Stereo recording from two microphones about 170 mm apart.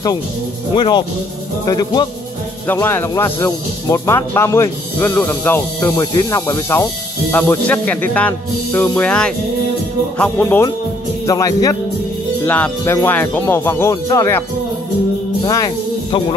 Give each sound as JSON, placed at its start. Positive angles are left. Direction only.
{"t": 0.7, "sound": "speech", "side_deg": 25}
{"t": 15.4, "sound": "speech", "side_deg": 20}